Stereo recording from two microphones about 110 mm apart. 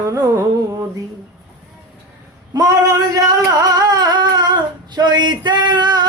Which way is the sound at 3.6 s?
35° right (ahead or behind).